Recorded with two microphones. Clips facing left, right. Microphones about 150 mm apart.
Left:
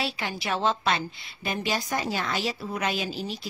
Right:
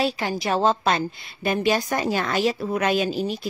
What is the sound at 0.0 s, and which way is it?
A woman's voice, 40° right (ahead or behind).